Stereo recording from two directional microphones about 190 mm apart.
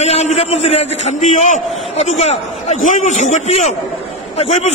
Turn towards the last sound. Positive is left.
turn(degrees=35)  # may be behind; listen again after turning